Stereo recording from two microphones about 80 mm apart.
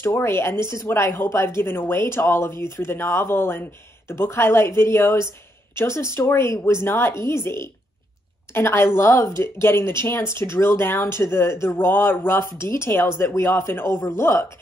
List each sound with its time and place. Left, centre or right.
0.0 s speech: left
8.5 s speech: left